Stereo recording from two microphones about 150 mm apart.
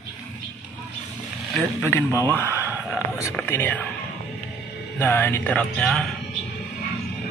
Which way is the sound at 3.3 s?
15° left (ahead or behind).